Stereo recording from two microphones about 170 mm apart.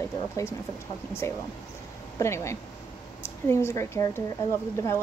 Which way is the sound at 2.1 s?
15° left (ahead or behind).